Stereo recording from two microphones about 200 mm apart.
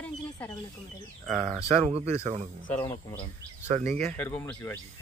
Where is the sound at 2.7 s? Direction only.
10° left (ahead or behind).